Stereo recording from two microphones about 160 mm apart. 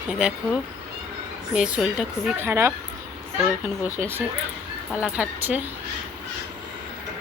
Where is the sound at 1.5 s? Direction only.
5° right (ahead or behind).